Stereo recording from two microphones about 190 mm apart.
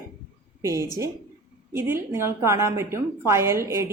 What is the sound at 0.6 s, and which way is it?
A woman's voice, 15° right (ahead or behind).